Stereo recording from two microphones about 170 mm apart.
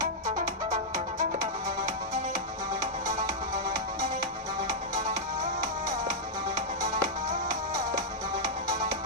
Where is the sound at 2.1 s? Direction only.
45° right (ahead or behind).